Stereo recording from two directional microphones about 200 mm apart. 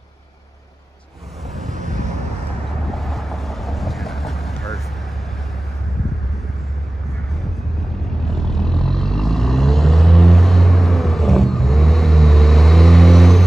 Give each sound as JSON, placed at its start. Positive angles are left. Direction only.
{"t": 1.6, "sound": "vehicle", "side_deg": -40}
{"t": 2.8, "sound": "vehicle", "side_deg": 0}
{"t": 8.2, "sound": "vehicle", "side_deg": 0}